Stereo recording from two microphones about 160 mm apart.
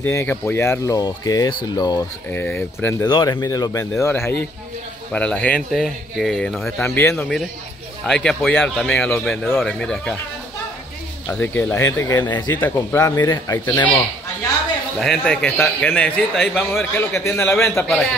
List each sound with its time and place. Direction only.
0.0 s speech: 15° left (ahead or behind)
2.3 s speech: 15° left (ahead or behind)
3.1 s speech: 30° left (ahead or behind); by 6.7 s 5° left (ahead or behind)
6.8 s speech: 15° left (ahead or behind)
8.1 s speech: 5° left (ahead or behind)
11.2 s speech: 10° left (ahead or behind)
12.5 s speech: 15° left (ahead or behind)
15.0 s speech: 5° left (ahead or behind)